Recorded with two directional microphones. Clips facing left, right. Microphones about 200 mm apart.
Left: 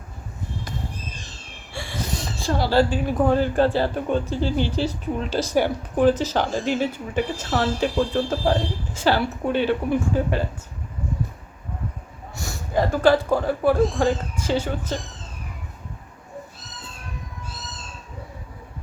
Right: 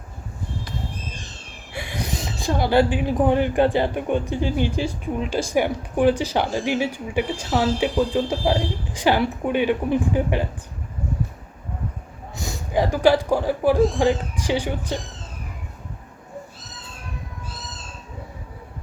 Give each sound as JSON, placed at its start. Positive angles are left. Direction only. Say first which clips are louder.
{"t": 1.7, "sound": "speech", "louder": "right 1 dB", "side_deg": -15}
{"t": 12.4, "sound": "speech", "louder": "right 1 dB", "side_deg": -15}